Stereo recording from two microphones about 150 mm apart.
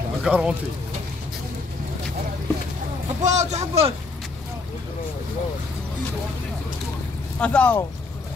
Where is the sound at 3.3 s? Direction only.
50° right (ahead or behind).